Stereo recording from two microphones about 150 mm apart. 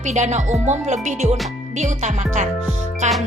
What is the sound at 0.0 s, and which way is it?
A woman's voice, 50° right (ahead or behind).